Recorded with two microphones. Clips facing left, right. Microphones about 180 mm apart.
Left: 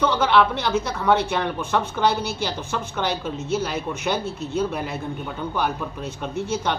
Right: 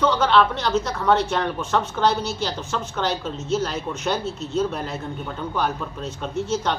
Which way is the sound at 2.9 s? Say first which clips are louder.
Even; 15° left (ahead or behind).